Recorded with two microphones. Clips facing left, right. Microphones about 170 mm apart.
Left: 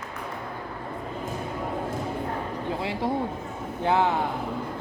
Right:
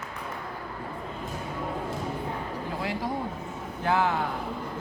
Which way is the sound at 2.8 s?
25° left (ahead or behind).